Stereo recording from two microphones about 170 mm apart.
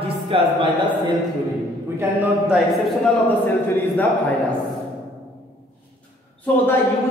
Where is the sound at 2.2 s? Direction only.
5° right (ahead or behind).